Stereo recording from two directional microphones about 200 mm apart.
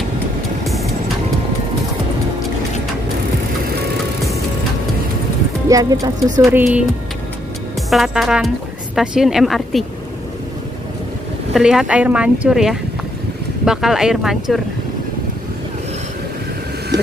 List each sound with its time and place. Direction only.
5.7 s speech: 15° right (ahead or behind)
6.4 s speech: 5° right (ahead or behind)
7.9 s speech: centre (ahead or behind)
11.5 s speech: 5° right (ahead or behind)
16.9 s vehicle: 20° right (ahead or behind)